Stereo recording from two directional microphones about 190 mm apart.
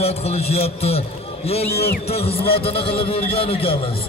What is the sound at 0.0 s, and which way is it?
A man's voice, 35° left (ahead or behind).